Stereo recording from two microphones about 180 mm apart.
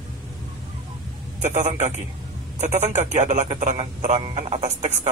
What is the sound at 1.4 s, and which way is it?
A man's voice, 40° right (ahead or behind).